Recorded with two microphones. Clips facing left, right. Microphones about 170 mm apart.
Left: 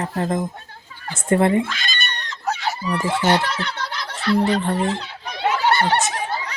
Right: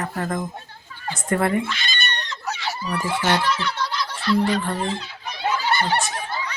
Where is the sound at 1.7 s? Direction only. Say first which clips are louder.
Even; 50° left (ahead or behind).